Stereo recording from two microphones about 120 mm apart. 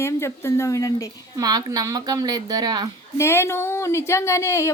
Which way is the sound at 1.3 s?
35° right (ahead or behind).